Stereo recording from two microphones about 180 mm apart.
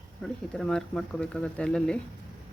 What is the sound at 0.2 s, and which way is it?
Speech, centre (ahead or behind).